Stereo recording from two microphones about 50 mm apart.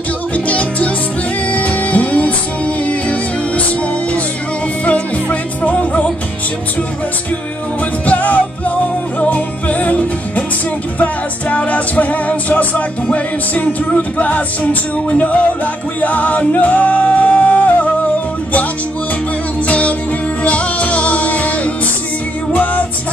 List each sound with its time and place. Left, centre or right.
0.5 s music: left
4.8 s music: left
8.1 s music: left
19.6 s music: left